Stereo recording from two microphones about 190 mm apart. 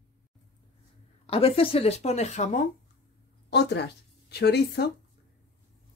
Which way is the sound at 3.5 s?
60° left (ahead or behind).